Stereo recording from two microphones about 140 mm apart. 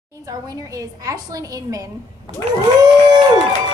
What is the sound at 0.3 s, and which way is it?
A woman's voice, 25° right (ahead or behind).